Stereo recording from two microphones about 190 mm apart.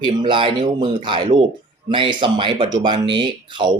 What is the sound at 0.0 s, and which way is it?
Speech, 25° right (ahead or behind).